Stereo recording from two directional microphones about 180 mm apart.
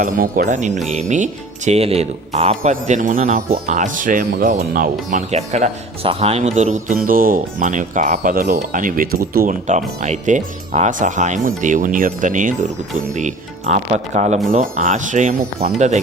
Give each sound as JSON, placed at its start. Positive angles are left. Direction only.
{"t": 0.0, "sound": "speech", "side_deg": -50}